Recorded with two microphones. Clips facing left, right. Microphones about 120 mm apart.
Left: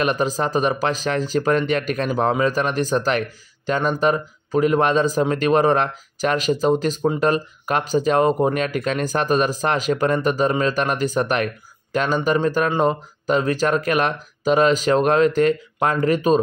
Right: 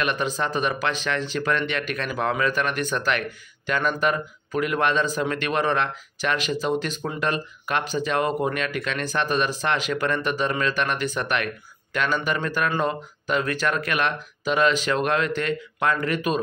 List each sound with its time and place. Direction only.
0.0 s speech: 40° left (ahead or behind)